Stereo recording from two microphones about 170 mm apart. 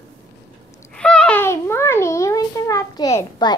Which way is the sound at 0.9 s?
5° left (ahead or behind).